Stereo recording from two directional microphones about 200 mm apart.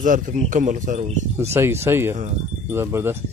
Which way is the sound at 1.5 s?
15° right (ahead or behind).